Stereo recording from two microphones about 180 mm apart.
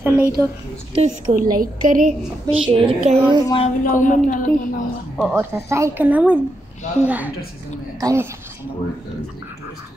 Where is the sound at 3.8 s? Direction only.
45° left (ahead or behind).